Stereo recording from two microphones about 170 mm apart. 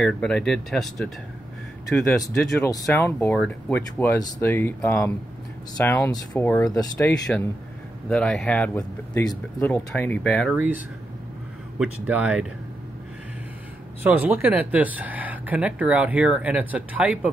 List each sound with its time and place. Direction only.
0.0 s speech: 5° left (ahead or behind)
2.6 s speech: 15° left (ahead or behind)
6.8 s speech: 25° left (ahead or behind)
7.1 s speech: 5° left (ahead or behind)
8.7 s speech: 20° left (ahead or behind)
10.5 s speech: 5° right (ahead or behind)
11.8 s speech: 5° right (ahead or behind)
14.0 s speech: 10° right (ahead or behind)